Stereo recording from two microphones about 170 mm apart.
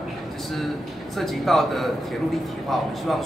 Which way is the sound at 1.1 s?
Centre (ahead or behind).